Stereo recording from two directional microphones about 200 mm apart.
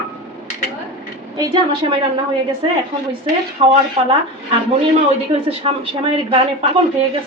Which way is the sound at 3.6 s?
25° right (ahead or behind).